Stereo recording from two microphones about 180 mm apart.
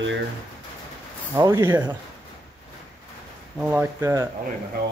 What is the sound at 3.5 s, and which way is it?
Speech, 10° right (ahead or behind).